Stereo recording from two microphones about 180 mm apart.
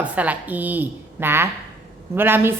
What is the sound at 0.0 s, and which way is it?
A woman's voice, 10° right (ahead or behind).